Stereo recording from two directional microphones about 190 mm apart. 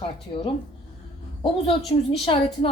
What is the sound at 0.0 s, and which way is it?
Speech, 30° left (ahead or behind).